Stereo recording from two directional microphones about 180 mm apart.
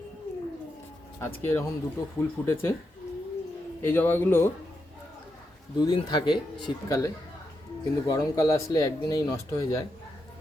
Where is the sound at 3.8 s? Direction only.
10° left (ahead or behind).